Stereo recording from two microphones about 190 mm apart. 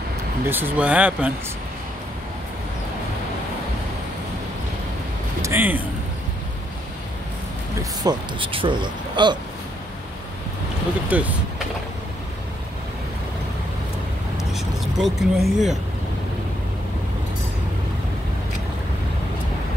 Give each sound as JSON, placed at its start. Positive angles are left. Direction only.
{"t": 0.5, "sound": "speech", "side_deg": -10}
{"t": 5.4, "sound": "speech", "side_deg": -10}
{"t": 8.0, "sound": "speech", "side_deg": -25}
{"t": 11.1, "sound": "speech", "side_deg": -10}
{"t": 14.5, "sound": "speech", "side_deg": 0}